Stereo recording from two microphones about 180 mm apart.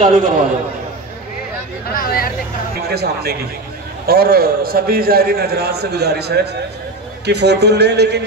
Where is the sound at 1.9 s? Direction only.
55° left (ahead or behind).